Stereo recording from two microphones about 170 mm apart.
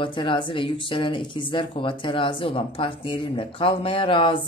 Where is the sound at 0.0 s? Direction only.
30° left (ahead or behind).